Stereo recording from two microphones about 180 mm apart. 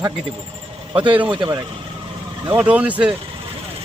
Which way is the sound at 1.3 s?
25° right (ahead or behind).